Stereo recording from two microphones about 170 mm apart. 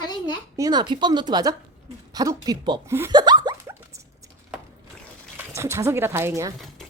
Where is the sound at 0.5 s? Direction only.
20° right (ahead or behind).